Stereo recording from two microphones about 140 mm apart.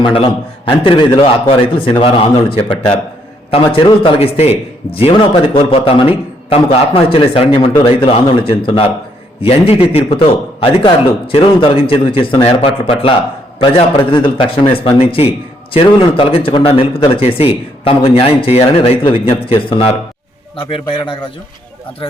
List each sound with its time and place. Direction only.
0.0 s a man's voice: 40° left (ahead or behind)
3.8 s a man's voice: 40° left (ahead or behind)